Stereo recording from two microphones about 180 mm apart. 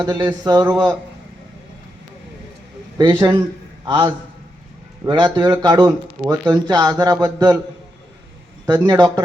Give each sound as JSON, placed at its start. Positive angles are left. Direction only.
{"t": 0.0, "sound": "speech", "side_deg": -20}
{"t": 3.0, "sound": "speech", "side_deg": -25}
{"t": 6.2, "sound": "speech", "side_deg": -10}
{"t": 6.5, "sound": "speech", "side_deg": -20}
{"t": 8.6, "sound": "speech", "side_deg": -20}